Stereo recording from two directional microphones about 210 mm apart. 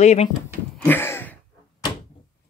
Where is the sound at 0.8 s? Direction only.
10° left (ahead or behind).